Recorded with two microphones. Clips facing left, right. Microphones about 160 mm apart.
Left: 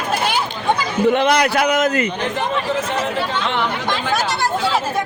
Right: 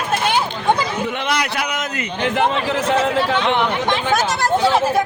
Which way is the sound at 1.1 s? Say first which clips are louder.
Left 6 dB; 40° left (ahead or behind).